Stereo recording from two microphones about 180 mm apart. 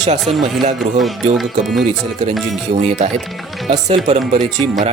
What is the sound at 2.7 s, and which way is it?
Speech, 40° right (ahead or behind).